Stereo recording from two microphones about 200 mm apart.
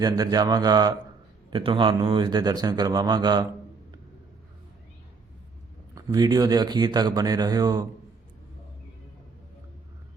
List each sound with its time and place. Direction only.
0.0 s speech: 20° right (ahead or behind)
5.9 s speech: 20° right (ahead or behind)